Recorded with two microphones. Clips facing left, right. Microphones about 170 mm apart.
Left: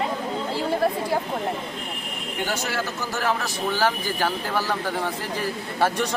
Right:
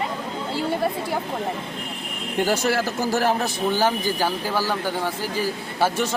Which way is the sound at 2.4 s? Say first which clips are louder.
Right 6 dB; 40° right (ahead or behind).